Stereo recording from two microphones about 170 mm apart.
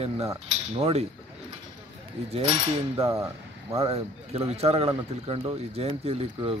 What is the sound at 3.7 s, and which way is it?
Speech, 35° right (ahead or behind).